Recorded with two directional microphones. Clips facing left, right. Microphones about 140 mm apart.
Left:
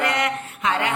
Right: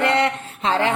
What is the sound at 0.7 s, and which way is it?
Speech, 30° right (ahead or behind).